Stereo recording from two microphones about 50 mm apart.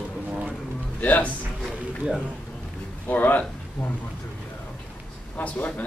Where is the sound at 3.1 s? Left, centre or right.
Left.